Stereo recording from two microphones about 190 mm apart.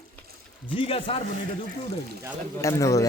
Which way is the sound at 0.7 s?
30° left (ahead or behind).